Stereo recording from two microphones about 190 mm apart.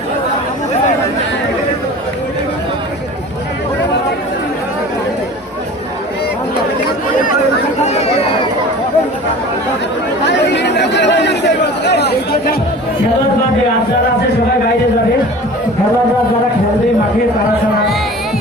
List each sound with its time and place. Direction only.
7.9 s chatter: 35° left (ahead or behind)
10.5 s chatter: 65° left (ahead or behind)